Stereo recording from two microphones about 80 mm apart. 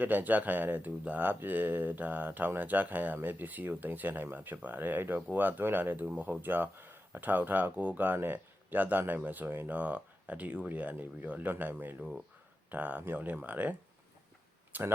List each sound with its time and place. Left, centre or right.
0.0 s speech: right